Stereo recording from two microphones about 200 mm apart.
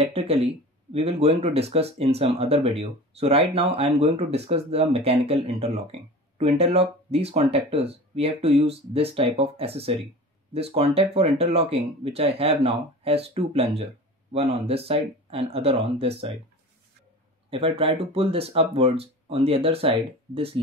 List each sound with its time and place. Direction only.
0.0 s speech: 30° right (ahead or behind)
17.5 s speech: 30° right (ahead or behind)